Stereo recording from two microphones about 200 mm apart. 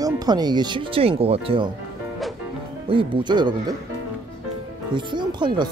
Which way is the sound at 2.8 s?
25° right (ahead or behind).